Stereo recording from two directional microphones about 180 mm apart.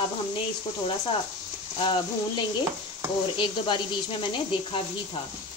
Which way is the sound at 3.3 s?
25° left (ahead or behind).